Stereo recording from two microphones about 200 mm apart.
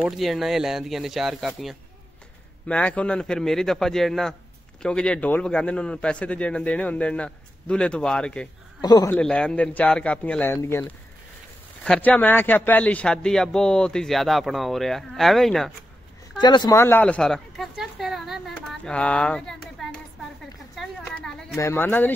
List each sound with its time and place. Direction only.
0.0 s a man's voice: centre (ahead or behind)
2.7 s a man's voice: 5° left (ahead or behind)
8.8 s a man's voice: 20° left (ahead or behind)
9.1 s a man's voice: 5° left (ahead or behind)
16.3 s a man's voice: 20° left (ahead or behind); by 20.0 s 5° left (ahead or behind)
20.7 s a sound: centre (ahead or behind)
21.5 s speech: 10° left (ahead or behind)